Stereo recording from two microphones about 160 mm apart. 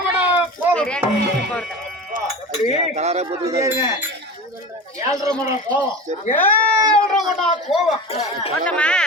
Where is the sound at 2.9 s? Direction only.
45° right (ahead or behind).